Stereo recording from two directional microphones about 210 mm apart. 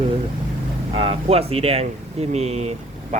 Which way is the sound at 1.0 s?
25° right (ahead or behind).